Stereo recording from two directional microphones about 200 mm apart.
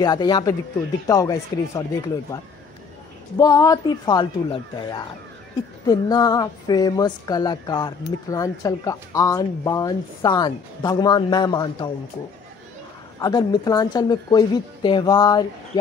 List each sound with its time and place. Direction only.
0.0 s speech: 20° left (ahead or behind)
13.2 s speech: 20° left (ahead or behind)